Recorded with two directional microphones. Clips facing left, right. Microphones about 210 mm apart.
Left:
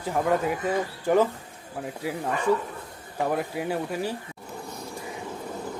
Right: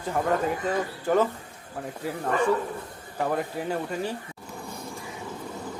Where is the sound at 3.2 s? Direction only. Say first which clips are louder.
Left 1 dB; 10° left (ahead or behind).